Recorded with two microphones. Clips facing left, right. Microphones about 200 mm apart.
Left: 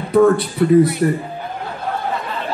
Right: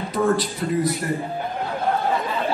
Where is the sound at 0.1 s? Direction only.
60° left (ahead or behind).